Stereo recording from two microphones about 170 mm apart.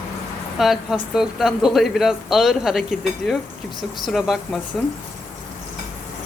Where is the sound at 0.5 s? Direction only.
Centre (ahead or behind).